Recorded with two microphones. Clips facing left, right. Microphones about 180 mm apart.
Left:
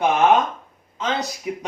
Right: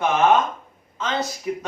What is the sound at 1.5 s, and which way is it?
Speech, 15° left (ahead or behind).